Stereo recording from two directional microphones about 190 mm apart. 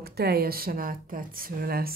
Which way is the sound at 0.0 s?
55° right (ahead or behind).